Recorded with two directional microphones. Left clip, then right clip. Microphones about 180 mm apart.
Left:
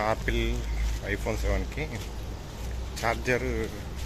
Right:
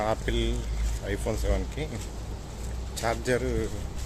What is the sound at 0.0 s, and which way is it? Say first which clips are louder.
Speech: even; 10° right (ahead or behind).